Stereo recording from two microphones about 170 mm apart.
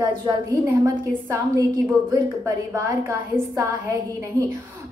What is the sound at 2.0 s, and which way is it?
A woman's voice, 15° right (ahead or behind).